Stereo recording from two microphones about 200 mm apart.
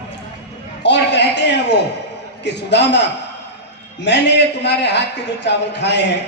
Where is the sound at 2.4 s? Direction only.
60° left (ahead or behind).